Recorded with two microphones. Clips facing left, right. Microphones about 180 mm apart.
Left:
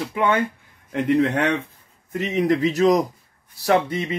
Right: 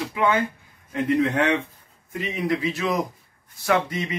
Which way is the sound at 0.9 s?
45° left (ahead or behind).